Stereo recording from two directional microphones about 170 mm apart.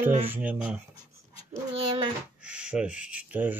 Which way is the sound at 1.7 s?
35° right (ahead or behind).